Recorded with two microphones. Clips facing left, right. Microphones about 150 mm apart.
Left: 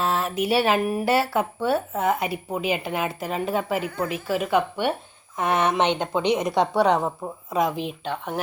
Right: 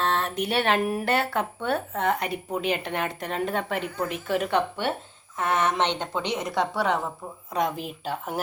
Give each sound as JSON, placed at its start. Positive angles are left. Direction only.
{"t": 0.0, "sound": "speech", "side_deg": 5}
{"t": 4.8, "sound": "a woman's voice", "side_deg": 15}
{"t": 7.5, "sound": "speech", "side_deg": 0}